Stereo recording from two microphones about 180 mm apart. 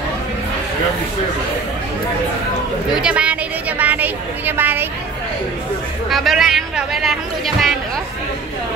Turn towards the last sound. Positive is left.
turn(degrees=0)  # may be behind; listen again after turning